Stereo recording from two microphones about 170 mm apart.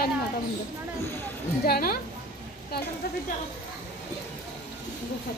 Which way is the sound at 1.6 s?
60° left (ahead or behind).